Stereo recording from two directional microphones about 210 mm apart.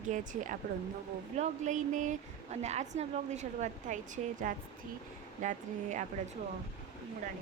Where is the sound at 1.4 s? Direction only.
35° right (ahead or behind).